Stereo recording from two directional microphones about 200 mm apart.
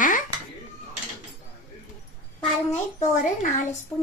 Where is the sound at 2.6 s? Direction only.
35° left (ahead or behind).